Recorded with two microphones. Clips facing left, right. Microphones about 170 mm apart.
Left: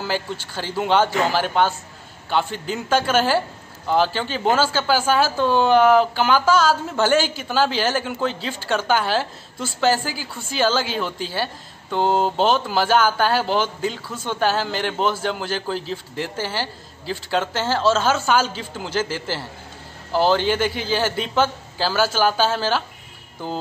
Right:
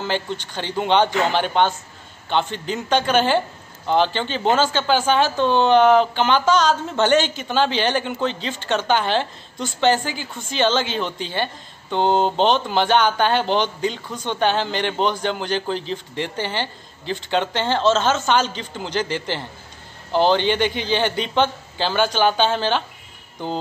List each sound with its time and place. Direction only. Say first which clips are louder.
0.0 s speech: right 1 dB; 5° left (ahead or behind)